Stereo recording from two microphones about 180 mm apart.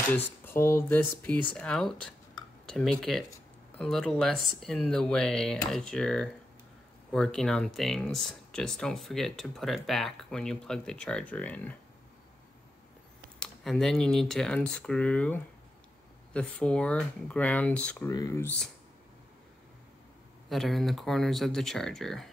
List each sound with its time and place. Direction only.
0.1 s speech: 10° left (ahead or behind)
13.4 s speech: 5° left (ahead or behind)
18.1 s speech: 20° left (ahead or behind)
20.4 s speech: centre (ahead or behind)